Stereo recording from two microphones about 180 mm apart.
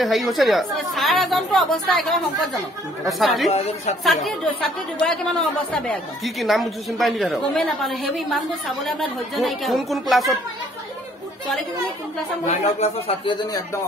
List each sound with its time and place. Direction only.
0.0 s speech: centre (ahead or behind)
3.5 s a woman's voice: 35° left (ahead or behind)
4.0 s speech: centre (ahead or behind)
12.8 s speech: 30° left (ahead or behind)